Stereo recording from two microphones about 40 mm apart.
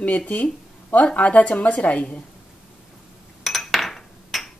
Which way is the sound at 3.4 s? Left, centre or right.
Centre.